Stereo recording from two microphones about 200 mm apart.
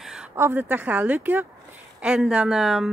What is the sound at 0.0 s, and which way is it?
Speech, 5° right (ahead or behind).